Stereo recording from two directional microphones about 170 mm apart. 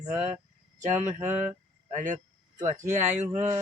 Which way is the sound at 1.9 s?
50° right (ahead or behind).